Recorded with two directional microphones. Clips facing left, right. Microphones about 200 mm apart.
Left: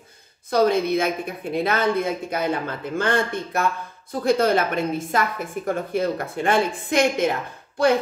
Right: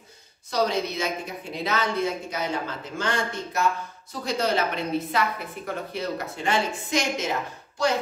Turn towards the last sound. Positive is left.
turn(degrees=55)  # may be behind; listen again after turning